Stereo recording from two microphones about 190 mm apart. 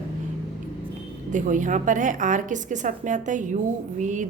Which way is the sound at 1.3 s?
40° right (ahead or behind).